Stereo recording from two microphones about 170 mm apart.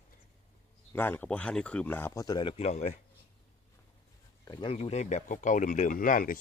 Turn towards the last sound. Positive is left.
turn(degrees=50)  # may be behind; listen again after turning